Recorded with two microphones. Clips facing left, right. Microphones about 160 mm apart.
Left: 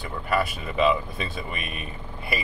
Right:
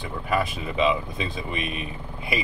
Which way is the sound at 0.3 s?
20° right (ahead or behind).